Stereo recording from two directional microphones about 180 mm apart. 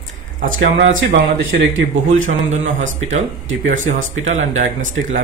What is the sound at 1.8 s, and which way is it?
Speech, 45° right (ahead or behind).